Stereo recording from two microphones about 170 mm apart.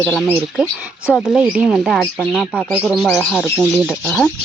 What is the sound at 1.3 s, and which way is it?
Speech, 5° right (ahead or behind).